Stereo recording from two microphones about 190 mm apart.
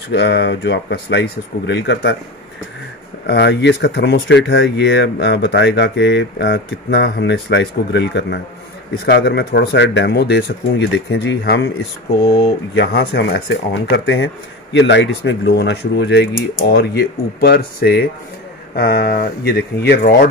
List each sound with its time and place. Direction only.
0.1 s speech: 60° left (ahead or behind)
3.3 s speech: 65° left (ahead or behind)